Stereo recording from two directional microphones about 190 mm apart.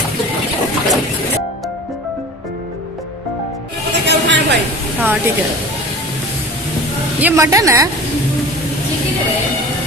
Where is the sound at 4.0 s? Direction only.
65° right (ahead or behind).